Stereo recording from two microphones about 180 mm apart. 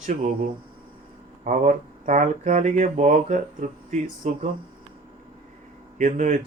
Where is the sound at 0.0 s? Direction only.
45° right (ahead or behind).